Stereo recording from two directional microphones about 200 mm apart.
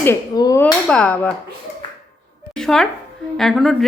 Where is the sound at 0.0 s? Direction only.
15° left (ahead or behind).